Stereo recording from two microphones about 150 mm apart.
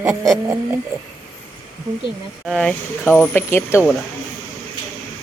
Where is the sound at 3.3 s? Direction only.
15° left (ahead or behind).